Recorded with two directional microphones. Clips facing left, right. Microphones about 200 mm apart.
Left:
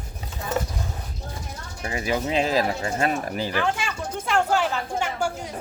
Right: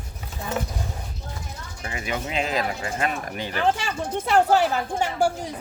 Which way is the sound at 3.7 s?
40° right (ahead or behind).